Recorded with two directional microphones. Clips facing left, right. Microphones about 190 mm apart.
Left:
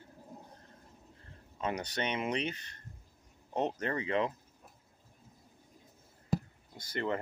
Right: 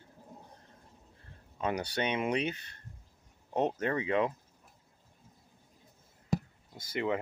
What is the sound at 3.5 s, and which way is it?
Speech, 10° right (ahead or behind).